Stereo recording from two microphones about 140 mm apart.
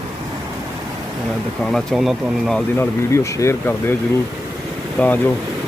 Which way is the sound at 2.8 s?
20° left (ahead or behind).